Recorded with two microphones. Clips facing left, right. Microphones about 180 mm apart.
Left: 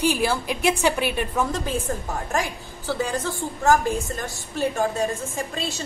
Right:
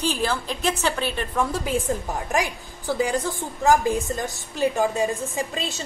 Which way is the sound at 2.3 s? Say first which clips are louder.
Right 2 dB; 15° right (ahead or behind).